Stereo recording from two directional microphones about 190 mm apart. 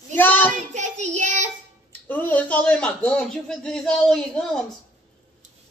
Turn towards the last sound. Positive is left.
turn(degrees=5)  # may be behind; listen again after turning